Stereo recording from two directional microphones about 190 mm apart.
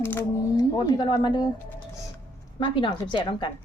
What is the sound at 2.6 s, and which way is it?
Speech, 25° left (ahead or behind).